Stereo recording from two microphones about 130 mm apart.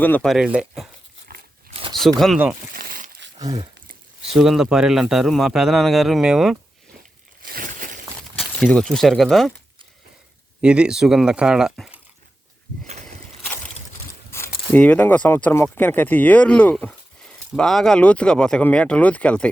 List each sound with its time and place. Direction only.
0.0 s speech: 15° left (ahead or behind)
0.3 s speech: 5° right (ahead or behind)
1.7 s a sound: 40° right (ahead or behind)
2.0 s speech: centre (ahead or behind)
2.7 s a sound: 90° right
4.4 s speech: 5° right (ahead or behind)
7.6 s a sound: 90° right
8.6 s speech: 5° left (ahead or behind)
10.6 s speech: 10° right (ahead or behind)
14.3 s speech: 20° left (ahead or behind)